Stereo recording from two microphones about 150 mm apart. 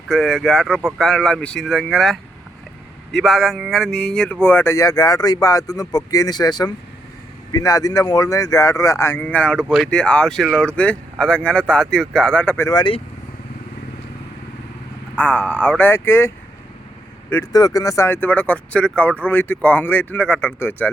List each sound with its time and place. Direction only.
0.1 s speech: 5° left (ahead or behind)
12.7 s speech: 30° left (ahead or behind)
15.1 s speech: 10° left (ahead or behind)
17.5 s speech: 25° left (ahead or behind)